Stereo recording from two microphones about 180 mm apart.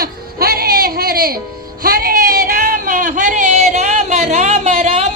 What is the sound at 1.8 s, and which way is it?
Speech, 55° right (ahead or behind).